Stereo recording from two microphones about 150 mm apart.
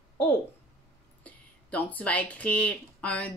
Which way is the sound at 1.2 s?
10° left (ahead or behind).